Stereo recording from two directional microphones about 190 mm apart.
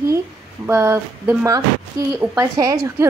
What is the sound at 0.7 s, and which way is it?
A woman's voice, 15° right (ahead or behind).